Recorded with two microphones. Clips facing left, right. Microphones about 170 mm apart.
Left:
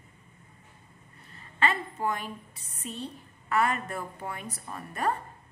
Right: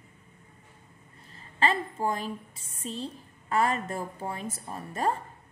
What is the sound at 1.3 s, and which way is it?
A woman's voice, 30° right (ahead or behind).